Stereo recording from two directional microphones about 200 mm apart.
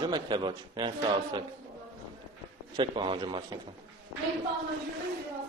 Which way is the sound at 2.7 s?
25° right (ahead or behind).